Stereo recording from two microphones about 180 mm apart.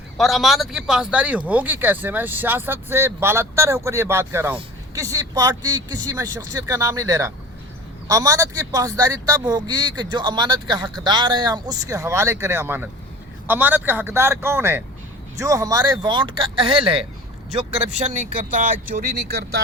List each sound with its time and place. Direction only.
0.2 s speech: centre (ahead or behind); by 19.6 s 60° right (ahead or behind)